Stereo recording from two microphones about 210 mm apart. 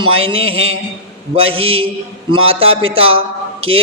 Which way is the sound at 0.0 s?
25° right (ahead or behind).